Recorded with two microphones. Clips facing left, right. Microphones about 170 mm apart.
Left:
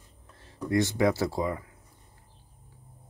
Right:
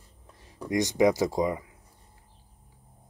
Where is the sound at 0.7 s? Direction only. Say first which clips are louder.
Right 2 dB; 15° right (ahead or behind).